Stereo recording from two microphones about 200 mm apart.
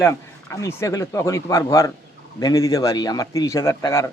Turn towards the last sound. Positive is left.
turn(degrees=15)  # may be behind; listen again after turning